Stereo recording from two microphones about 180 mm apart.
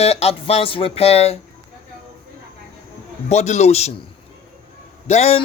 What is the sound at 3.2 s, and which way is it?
Speech, 40° left (ahead or behind).